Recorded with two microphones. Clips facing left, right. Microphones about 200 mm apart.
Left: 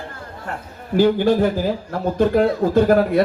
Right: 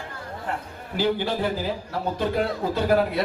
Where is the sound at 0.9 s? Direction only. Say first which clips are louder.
Left 9 dB; 45° left (ahead or behind).